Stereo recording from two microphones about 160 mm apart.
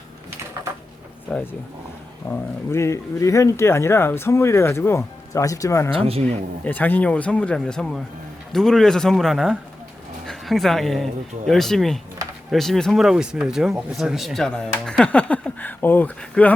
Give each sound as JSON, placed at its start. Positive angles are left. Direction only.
{"t": 1.3, "sound": "speech", "side_deg": 10}
{"t": 5.9, "sound": "speech", "side_deg": -35}
{"t": 6.7, "sound": "speech", "side_deg": 10}